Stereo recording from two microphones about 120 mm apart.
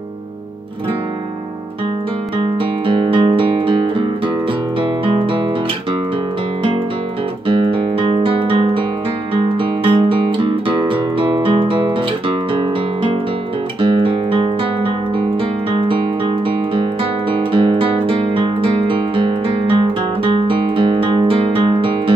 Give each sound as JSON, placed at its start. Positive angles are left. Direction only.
{"t": 2.3, "sound": "guitar", "side_deg": -40}
{"t": 8.0, "sound": "guitar", "side_deg": -50}
{"t": 9.3, "sound": "music", "side_deg": -45}
{"t": 11.1, "sound": "guitar", "side_deg": -45}
{"t": 13.7, "sound": "guitar", "side_deg": -45}
{"t": 15.7, "sound": "music", "side_deg": -45}
{"t": 17.5, "sound": "guitar", "side_deg": -45}